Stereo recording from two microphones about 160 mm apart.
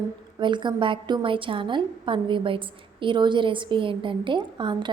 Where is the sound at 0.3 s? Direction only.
30° right (ahead or behind).